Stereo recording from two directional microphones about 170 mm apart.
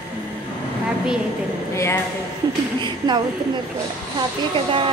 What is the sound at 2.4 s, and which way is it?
Speech, 20° right (ahead or behind).